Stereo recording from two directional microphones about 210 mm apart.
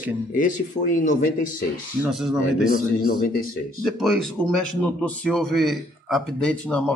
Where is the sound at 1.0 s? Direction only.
40° left (ahead or behind).